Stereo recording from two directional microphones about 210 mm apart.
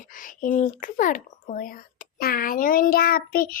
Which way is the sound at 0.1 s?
40° left (ahead or behind).